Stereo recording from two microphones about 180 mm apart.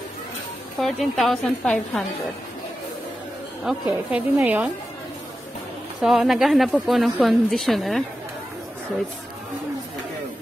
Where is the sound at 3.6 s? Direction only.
5° right (ahead or behind).